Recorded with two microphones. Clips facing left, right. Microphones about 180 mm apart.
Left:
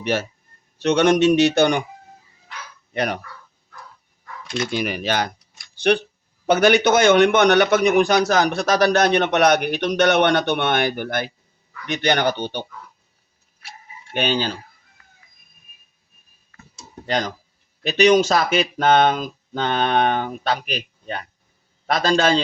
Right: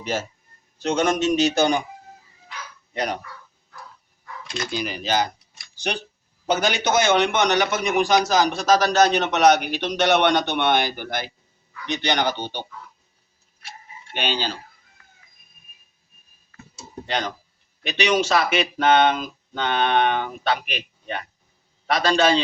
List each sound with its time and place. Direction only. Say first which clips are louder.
0.0 s a man's voice: left 4 dB; 65° left (ahead or behind)
2.9 s speech: left 3 dB; 60° left (ahead or behind)
4.7 s a man's voice: even; 60° left (ahead or behind)
14.1 s speech: left 4 dB; 50° left (ahead or behind)
17.1 s speech: left 4 dB; 40° left (ahead or behind)